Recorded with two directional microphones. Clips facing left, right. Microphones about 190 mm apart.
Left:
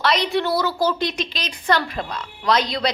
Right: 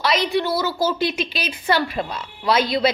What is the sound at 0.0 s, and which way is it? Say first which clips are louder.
A woman's voice: even; centre (ahead or behind).